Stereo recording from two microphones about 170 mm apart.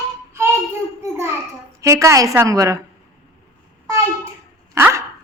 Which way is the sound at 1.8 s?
15° right (ahead or behind).